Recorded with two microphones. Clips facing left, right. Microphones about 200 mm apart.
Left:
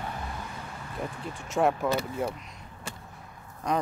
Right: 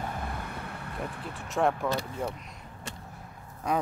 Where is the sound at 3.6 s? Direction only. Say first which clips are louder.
Left 1 dB; 5° right (ahead or behind).